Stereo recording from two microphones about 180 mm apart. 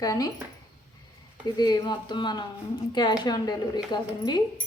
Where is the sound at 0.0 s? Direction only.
20° left (ahead or behind).